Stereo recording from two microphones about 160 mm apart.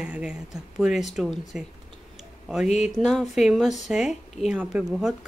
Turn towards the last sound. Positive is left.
turn(degrees=-5)  # may be behind; listen again after turning